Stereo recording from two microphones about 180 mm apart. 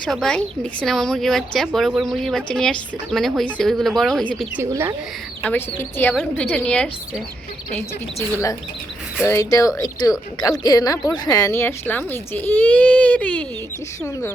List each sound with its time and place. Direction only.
0.0 s a woman's voice: 5° left (ahead or behind)
4.5 s speech: 15° right (ahead or behind)
5.4 s speech: 10° left (ahead or behind)
9.2 s speech: 15° left (ahead or behind)